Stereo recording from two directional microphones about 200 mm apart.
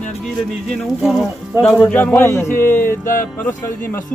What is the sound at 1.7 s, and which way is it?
Speech, 10° left (ahead or behind).